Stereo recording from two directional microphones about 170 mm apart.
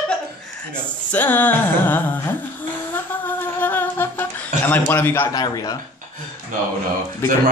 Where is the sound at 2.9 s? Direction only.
10° left (ahead or behind).